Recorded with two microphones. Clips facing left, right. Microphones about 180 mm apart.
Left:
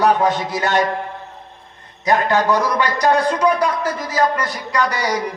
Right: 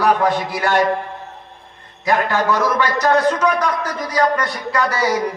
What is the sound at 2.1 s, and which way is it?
A man's voice, 15° left (ahead or behind).